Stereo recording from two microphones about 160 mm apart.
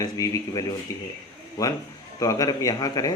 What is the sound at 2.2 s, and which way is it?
Speech, 20° left (ahead or behind).